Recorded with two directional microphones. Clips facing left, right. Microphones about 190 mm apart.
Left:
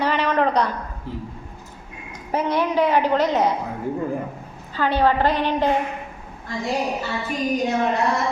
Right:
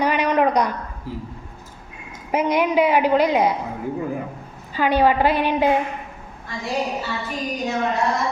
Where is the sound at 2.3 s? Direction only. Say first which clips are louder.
Right 2 dB; 15° right (ahead or behind).